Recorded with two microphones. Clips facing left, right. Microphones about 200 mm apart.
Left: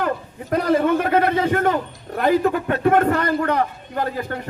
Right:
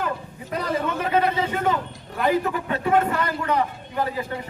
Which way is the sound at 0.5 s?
55° left (ahead or behind).